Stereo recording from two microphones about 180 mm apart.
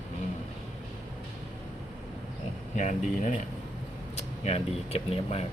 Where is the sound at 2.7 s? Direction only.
40° left (ahead or behind).